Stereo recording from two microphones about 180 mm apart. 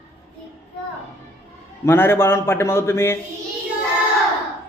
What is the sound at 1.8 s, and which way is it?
A man's voice, 15° left (ahead or behind).